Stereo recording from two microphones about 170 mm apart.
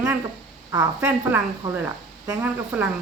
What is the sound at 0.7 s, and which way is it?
Speech, 15° right (ahead or behind).